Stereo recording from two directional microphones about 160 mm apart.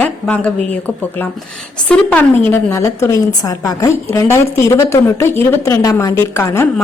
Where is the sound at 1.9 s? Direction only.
10° left (ahead or behind).